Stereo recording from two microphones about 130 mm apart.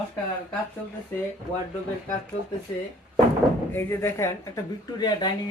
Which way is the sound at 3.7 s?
20° left (ahead or behind).